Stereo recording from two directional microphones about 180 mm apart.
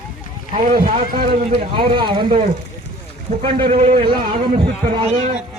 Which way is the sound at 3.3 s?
40° right (ahead or behind).